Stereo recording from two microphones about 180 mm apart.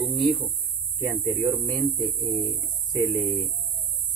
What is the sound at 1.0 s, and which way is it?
Speech, 15° right (ahead or behind).